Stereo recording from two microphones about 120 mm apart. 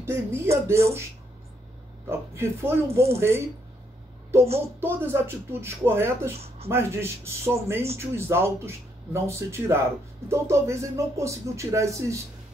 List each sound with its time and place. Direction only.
0.0 s speech: 20° right (ahead or behind)
2.0 s speech: 20° right (ahead or behind)
4.7 s speech: 20° right (ahead or behind)